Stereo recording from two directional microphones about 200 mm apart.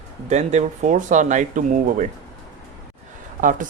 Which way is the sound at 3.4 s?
45° right (ahead or behind).